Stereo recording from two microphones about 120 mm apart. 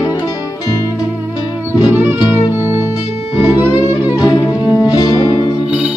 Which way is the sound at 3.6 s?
30° left (ahead or behind).